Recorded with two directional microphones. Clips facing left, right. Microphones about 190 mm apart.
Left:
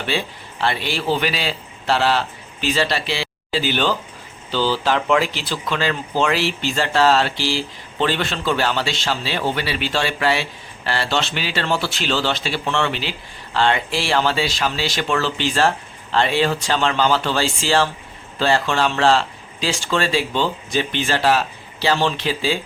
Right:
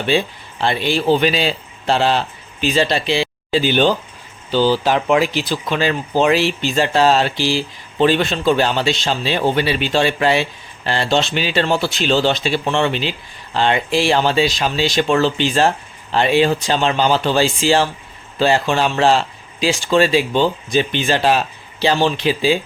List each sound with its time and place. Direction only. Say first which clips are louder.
0.0 s a man's voice: right 6 dB; 20° right (ahead or behind)